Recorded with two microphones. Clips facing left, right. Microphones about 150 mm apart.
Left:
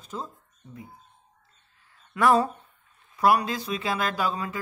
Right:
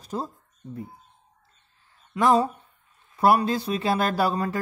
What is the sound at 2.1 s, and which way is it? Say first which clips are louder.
Speech: right 1 dB; 20° right (ahead or behind).